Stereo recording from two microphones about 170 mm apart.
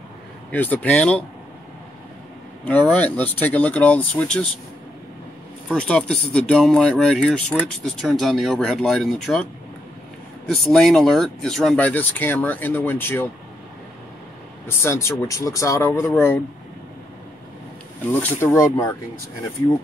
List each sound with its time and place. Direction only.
0.5 s speech: 10° left (ahead or behind)
2.6 s speech: 10° left (ahead or behind)
5.7 s speech: 5° left (ahead or behind)
10.5 s speech: 5° left (ahead or behind)
14.7 s speech: 15° left (ahead or behind)
18.2 s speech: 15° left (ahead or behind)